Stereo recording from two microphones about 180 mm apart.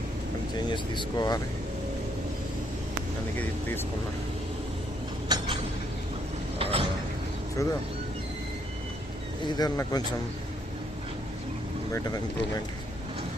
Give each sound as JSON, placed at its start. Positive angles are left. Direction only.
{"t": 0.7, "sound": "speech", "side_deg": 25}
{"t": 5.3, "sound": "a sound", "side_deg": -25}
{"t": 6.6, "sound": "mechanisms", "side_deg": -30}
{"t": 7.6, "sound": "speech", "side_deg": 20}
{"t": 9.5, "sound": "speech", "side_deg": 20}